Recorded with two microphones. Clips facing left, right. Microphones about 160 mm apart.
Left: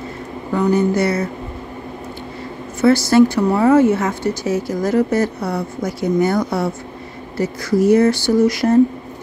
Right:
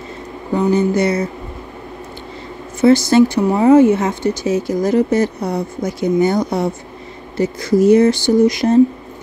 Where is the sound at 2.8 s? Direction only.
20° right (ahead or behind).